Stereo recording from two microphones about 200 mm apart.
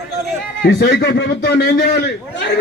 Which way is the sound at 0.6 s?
55° left (ahead or behind).